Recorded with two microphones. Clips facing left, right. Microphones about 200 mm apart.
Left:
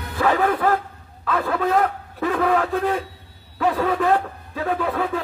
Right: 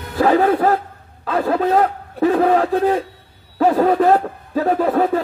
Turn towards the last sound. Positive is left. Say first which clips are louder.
# right 7 dB
turn(degrees=-40)  # may be behind; listen again after turning